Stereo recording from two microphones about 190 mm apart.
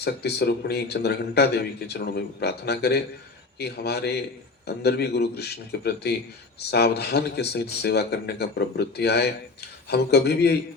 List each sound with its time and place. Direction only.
0.0 s speech: 60° left (ahead or behind)